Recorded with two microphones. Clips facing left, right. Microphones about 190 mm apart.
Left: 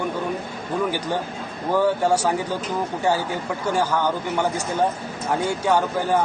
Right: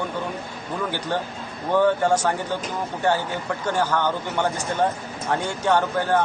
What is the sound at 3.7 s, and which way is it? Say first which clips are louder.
Speech: left 1 dB; 10° left (ahead or behind).